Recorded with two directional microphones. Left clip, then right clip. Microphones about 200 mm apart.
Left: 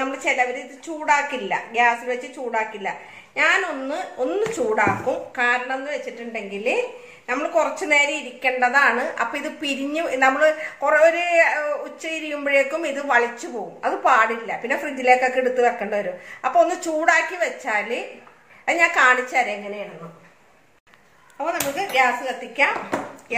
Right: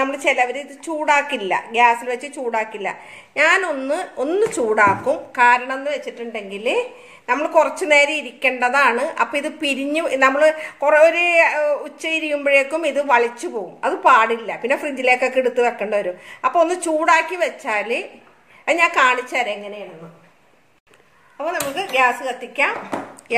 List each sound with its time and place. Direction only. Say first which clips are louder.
0.0 s a woman's voice: right 4 dB; 50° right (ahead or behind)
21.7 s a woman's voice: right 2 dB; 45° right (ahead or behind)